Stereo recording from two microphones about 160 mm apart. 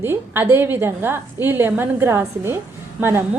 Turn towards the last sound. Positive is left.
turn(degrees=-15)  # may be behind; listen again after turning